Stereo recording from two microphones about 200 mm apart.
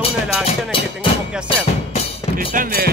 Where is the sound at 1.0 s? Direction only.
25° left (ahead or behind).